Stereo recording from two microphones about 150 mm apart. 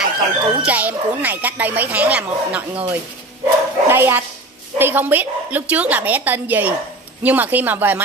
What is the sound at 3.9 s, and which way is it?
Dog, 15° right (ahead or behind).